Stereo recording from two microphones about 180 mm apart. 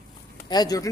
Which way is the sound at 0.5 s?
20° left (ahead or behind).